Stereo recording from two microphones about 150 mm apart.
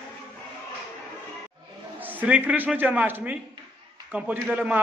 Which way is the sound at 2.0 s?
10° right (ahead or behind).